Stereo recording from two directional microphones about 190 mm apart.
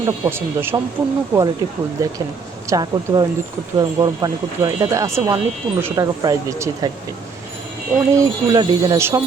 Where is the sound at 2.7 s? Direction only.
20° right (ahead or behind).